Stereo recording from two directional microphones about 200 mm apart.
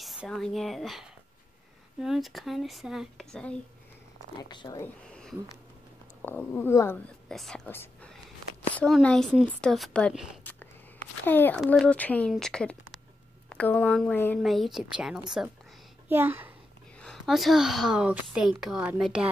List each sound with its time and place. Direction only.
0.0 s speech: centre (ahead or behind)
4.4 s speech: 20° left (ahead or behind)
6.2 s a child's voice: 10° left (ahead or behind); by 16.5 s 10° right (ahead or behind)
17.0 s speech: centre (ahead or behind)